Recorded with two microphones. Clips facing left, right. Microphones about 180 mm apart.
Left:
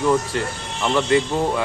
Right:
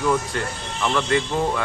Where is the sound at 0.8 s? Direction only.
25° left (ahead or behind).